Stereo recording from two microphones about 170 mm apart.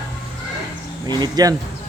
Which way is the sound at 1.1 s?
25° right (ahead or behind).